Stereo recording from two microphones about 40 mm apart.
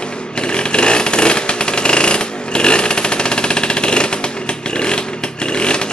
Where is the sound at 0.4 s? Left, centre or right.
Left.